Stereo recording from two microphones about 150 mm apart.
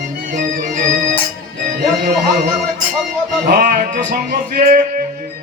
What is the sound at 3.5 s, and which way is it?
Music, 80° right.